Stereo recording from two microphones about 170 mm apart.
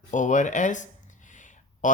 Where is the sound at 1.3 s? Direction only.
50° left (ahead or behind).